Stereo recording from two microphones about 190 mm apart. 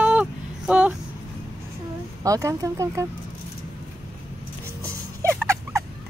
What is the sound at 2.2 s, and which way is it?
Speech, 20° right (ahead or behind).